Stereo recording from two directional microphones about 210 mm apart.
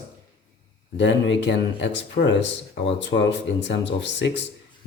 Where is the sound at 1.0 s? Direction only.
60° left (ahead or behind).